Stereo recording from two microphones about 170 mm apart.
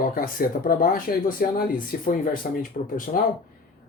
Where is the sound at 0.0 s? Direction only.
55° left (ahead or behind).